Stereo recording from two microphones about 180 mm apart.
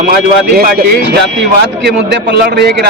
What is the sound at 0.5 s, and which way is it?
Speech, 55° right (ahead or behind).